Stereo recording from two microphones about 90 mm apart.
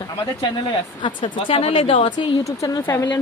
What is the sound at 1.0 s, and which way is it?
Speech, 65° left (ahead or behind).